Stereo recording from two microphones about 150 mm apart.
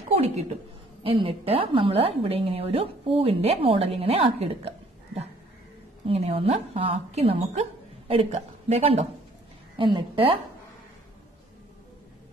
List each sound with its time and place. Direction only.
0.2 s a woman's voice: 45° right (ahead or behind)